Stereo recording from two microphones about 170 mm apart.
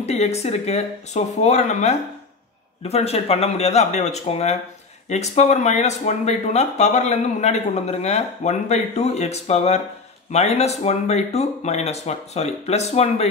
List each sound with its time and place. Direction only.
0.0 s speech: 40° left (ahead or behind)